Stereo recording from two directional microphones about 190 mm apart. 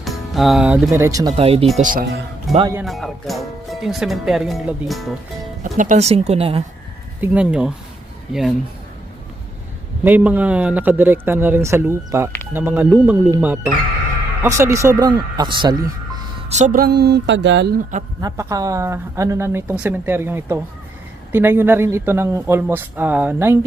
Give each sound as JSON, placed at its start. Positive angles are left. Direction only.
{"t": 0.0, "sound": "music", "side_deg": 0}
{"t": 0.9, "sound": "speech", "side_deg": -15}
{"t": 1.4, "sound": "speech", "side_deg": -30}
{"t": 1.8, "sound": "speech", "side_deg": -45}
{"t": 2.5, "sound": "speech", "side_deg": 0}
{"t": 5.7, "sound": "speech", "side_deg": -40}
{"t": 7.2, "sound": "speech", "side_deg": -5}
{"t": 10.0, "sound": "speech", "side_deg": -10}
{"t": 16.6, "sound": "speech", "side_deg": -45}
{"t": 18.2, "sound": "speech", "side_deg": -15}